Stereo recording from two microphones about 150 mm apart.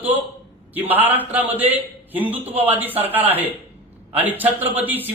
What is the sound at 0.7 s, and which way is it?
A man's voice, 10° right (ahead or behind).